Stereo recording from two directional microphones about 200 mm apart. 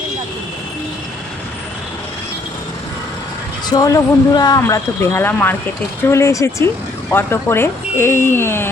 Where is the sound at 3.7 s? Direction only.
20° left (ahead or behind).